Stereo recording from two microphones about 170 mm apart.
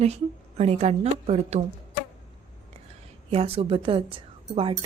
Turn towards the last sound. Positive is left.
turn(degrees=-30)  # may be behind; listen again after turning